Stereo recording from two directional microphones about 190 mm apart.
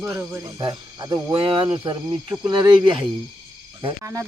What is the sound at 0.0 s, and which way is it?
Speech, 15° right (ahead or behind).